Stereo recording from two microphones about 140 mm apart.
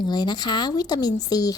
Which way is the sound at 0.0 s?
30° left (ahead or behind).